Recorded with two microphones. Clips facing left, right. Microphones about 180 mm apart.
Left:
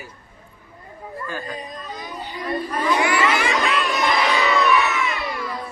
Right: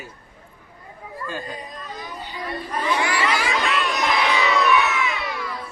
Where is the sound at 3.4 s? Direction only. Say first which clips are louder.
Left 2 dB; centre (ahead or behind).